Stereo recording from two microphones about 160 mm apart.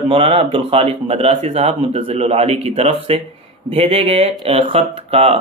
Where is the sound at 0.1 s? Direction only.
35° right (ahead or behind).